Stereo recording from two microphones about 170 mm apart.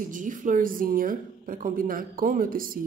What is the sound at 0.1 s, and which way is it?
A woman's voice, 50° right (ahead or behind).